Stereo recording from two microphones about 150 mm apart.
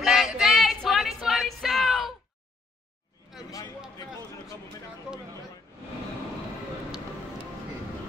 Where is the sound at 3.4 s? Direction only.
25° left (ahead or behind).